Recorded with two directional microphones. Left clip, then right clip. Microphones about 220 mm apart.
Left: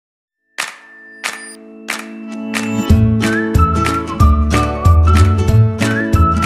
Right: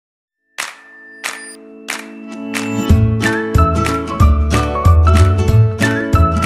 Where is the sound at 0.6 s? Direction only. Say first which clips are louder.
Left 2 dB; centre (ahead or behind).